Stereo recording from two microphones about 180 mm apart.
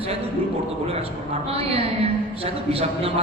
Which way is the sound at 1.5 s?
35° right (ahead or behind).